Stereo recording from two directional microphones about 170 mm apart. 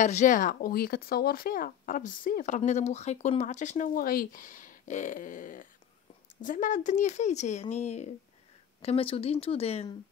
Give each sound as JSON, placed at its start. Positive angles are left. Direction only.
{"t": 0.0, "sound": "speech", "side_deg": 45}